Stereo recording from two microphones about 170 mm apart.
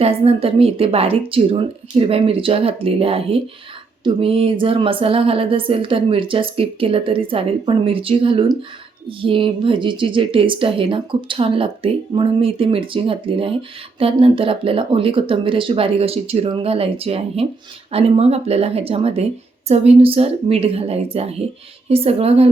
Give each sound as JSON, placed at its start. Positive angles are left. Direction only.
{"t": 0.0, "sound": "speech", "side_deg": -35}